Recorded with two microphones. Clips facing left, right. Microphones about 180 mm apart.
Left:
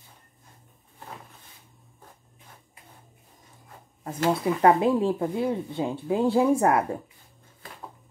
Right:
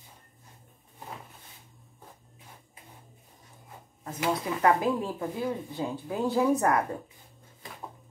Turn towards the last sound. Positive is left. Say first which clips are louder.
# left 3 dB
turn(degrees=25)  # may be behind; listen again after turning